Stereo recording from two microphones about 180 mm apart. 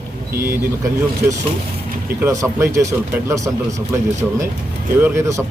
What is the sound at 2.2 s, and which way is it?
Speech, 15° right (ahead or behind).